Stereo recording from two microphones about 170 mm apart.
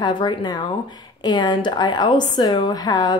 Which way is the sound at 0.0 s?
25° left (ahead or behind).